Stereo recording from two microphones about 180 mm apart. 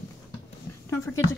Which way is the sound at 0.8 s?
15° left (ahead or behind).